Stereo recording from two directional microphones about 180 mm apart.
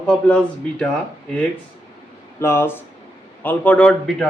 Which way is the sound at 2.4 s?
15° left (ahead or behind).